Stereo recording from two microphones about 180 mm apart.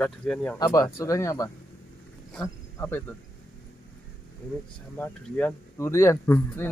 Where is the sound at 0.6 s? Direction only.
20° left (ahead or behind).